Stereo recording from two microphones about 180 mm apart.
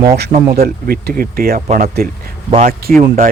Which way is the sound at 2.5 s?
35° right (ahead or behind).